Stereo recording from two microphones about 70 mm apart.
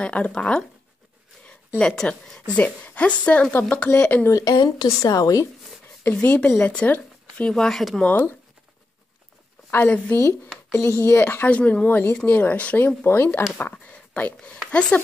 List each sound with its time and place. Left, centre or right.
0.0 s speech: centre
1.8 s speech: centre
2.5 s speech: left
4.3 s speech: left
4.6 s a woman's voice: left
6.2 s speech: left; by 8.0 s centre
8.0 s speech: left
9.7 s speech: left; by 15.0 s centre